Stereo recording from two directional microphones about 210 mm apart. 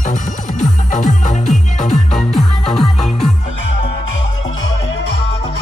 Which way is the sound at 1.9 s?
Centre (ahead or behind).